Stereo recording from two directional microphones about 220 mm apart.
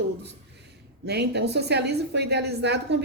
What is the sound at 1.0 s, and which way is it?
A woman's voice, 50° right (ahead or behind).